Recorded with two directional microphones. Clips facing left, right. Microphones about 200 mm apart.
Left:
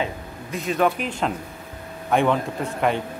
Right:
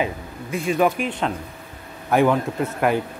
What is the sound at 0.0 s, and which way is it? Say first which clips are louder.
Speech: right 3 dB; 10° right (ahead or behind).